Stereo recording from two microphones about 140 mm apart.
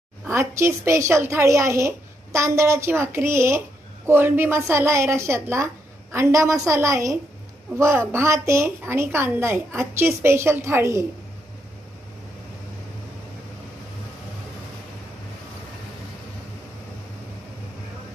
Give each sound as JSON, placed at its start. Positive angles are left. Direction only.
{"t": 0.3, "sound": "speech", "side_deg": -20}